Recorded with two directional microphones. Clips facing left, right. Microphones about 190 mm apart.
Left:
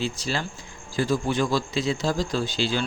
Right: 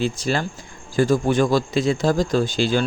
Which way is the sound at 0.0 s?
55° right (ahead or behind).